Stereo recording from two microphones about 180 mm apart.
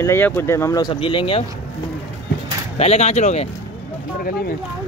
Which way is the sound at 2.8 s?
35° left (ahead or behind).